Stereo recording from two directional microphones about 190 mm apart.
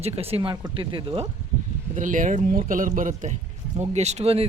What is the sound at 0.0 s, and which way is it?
Speech, 30° right (ahead or behind).